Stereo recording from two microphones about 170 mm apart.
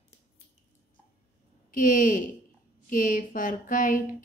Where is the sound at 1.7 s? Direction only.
50° left (ahead or behind).